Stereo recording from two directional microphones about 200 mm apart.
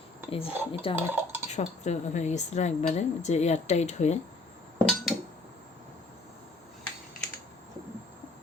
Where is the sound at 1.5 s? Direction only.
35° left (ahead or behind).